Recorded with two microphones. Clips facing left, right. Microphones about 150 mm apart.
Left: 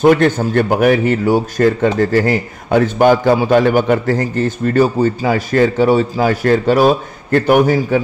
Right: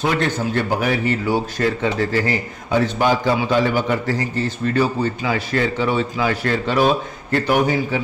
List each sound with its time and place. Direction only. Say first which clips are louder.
0.0 s speech: left 9 dB; 50° left (ahead or behind)